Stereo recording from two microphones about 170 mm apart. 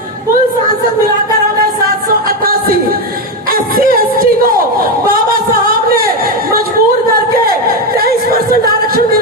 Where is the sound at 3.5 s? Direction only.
60° right (ahead or behind).